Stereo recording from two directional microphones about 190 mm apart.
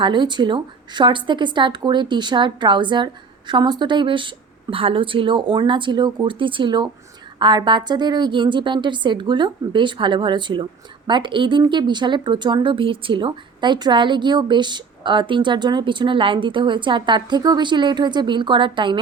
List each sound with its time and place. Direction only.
0.0 s a woman's voice: 25° right (ahead or behind)